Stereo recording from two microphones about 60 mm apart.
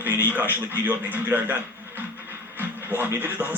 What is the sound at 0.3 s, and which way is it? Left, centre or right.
A man's voice, right.